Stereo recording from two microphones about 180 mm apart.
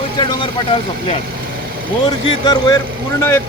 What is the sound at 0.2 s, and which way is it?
Speech, 25° left (ahead or behind).